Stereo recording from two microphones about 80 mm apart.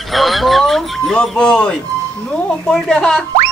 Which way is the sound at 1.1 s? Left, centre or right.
Centre.